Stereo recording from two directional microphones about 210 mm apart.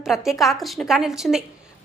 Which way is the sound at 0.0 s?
Centre (ahead or behind).